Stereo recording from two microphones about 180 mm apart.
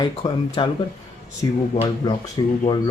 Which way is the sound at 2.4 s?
25° left (ahead or behind).